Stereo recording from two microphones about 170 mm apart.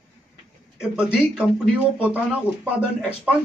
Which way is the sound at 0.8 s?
5° right (ahead or behind).